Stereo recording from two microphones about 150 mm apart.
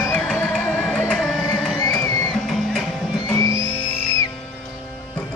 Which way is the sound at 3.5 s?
35° right (ahead or behind).